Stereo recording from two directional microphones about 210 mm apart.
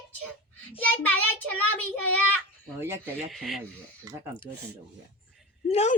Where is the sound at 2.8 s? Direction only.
10° right (ahead or behind).